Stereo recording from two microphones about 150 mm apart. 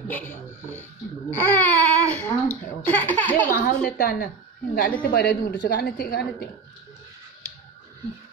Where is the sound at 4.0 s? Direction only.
90° left.